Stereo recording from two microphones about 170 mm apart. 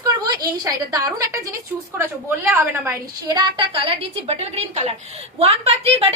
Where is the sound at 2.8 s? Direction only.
25° right (ahead or behind).